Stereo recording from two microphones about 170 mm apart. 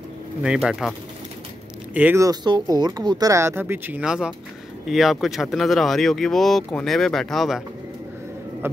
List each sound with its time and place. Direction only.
0.4 s speech: 5° right (ahead or behind)
2.0 s speech: 15° right (ahead or behind)
8.6 s a sound: 10° right (ahead or behind)